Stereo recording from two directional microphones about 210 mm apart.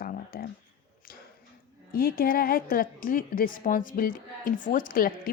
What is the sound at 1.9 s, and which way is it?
A woman's voice, 45° left (ahead or behind).